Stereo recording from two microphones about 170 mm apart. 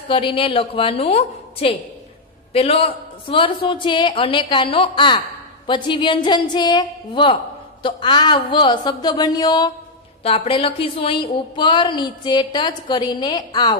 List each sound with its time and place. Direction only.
0.1 s a woman's voice: 30° left (ahead or behind)